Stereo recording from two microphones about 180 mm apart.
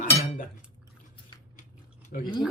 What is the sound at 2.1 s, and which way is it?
Speech, 50° left (ahead or behind).